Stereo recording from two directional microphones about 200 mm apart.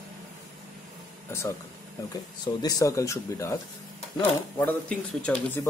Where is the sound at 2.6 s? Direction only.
15° left (ahead or behind).